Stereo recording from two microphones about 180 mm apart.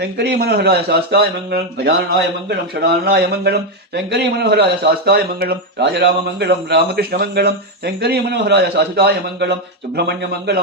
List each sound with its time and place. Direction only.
0.0 s a man's voice: 65° right (ahead or behind)
3.0 s a man's voice: 65° right (ahead or behind)